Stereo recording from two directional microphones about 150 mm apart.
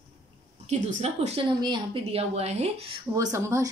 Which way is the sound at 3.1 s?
20° right (ahead or behind).